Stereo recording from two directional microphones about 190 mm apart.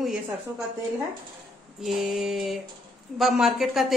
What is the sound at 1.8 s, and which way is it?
A woman's voice, centre (ahead or behind).